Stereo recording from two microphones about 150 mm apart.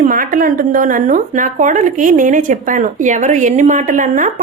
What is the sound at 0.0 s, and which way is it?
Speech, 65° right (ahead or behind).